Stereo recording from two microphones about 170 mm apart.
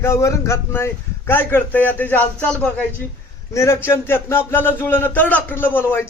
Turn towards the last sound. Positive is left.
turn(degrees=10)  # may be behind; listen again after turning